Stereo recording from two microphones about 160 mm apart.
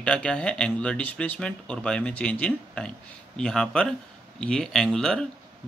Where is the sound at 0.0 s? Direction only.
5° left (ahead or behind).